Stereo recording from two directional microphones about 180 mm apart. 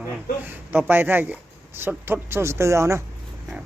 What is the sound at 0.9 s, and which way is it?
Speech, 10° right (ahead or behind).